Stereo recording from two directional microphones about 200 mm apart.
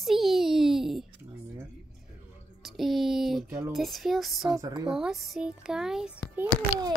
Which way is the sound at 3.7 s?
Centre (ahead or behind).